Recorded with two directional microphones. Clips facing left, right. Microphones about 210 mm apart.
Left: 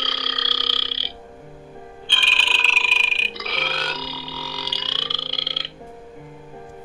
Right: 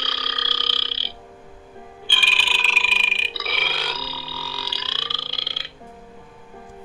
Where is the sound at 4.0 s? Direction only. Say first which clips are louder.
Left 2 dB; 15° left (ahead or behind).